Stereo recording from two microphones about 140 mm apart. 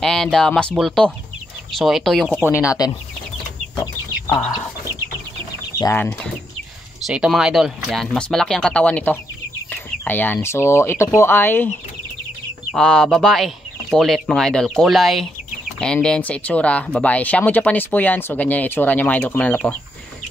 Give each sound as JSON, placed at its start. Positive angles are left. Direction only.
{"t": 0.0, "sound": "speech", "side_deg": 5}
{"t": 2.4, "sound": "speech", "side_deg": 20}
{"t": 7.1, "sound": "speech", "side_deg": -5}
{"t": 12.7, "sound": "speech", "side_deg": 5}